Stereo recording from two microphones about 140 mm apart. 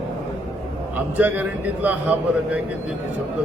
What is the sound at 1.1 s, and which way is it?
Speech, 10° right (ahead or behind).